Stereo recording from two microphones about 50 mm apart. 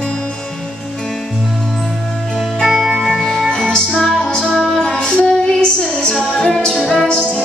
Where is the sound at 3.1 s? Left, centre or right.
Centre.